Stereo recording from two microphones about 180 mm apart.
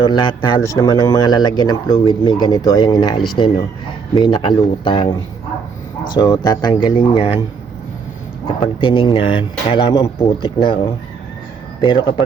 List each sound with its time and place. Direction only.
0.0 s speech: 25° left (ahead or behind)
6.1 s speech: 20° left (ahead or behind)
8.6 s speech: 30° left (ahead or behind)